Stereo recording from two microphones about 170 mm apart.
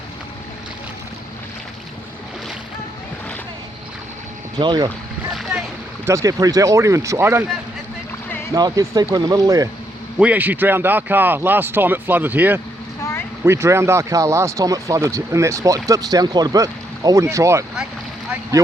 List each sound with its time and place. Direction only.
4.5 s speech: 25° right (ahead or behind)
5.3 s splash: centre (ahead or behind)
6.1 s speech: 20° right (ahead or behind)
8.5 s speech: 20° right (ahead or behind)
10.2 s speech: 10° right (ahead or behind)
13.0 s vehicle: 15° left (ahead or behind)
13.4 s speech: 15° right (ahead or behind)